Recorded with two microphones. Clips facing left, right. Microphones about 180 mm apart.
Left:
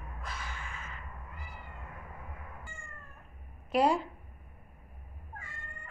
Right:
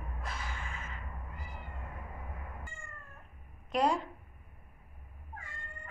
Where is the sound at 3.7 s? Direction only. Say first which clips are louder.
Left 3 dB; 5° left (ahead or behind).